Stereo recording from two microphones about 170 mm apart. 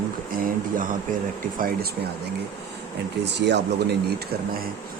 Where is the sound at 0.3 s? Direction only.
55° right (ahead or behind).